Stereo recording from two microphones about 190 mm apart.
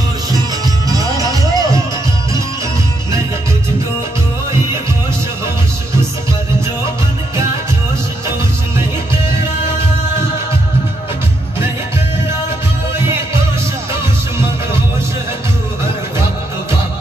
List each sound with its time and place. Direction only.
0.9 s music: 20° right (ahead or behind)